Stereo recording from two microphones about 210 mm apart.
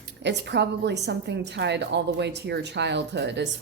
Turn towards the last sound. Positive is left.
turn(degrees=-55)  # may be behind; listen again after turning